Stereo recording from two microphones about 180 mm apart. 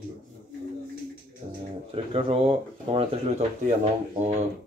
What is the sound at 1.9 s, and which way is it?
Speech, 30° right (ahead or behind).